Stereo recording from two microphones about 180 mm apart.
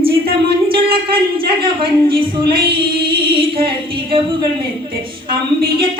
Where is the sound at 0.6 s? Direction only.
30° right (ahead or behind).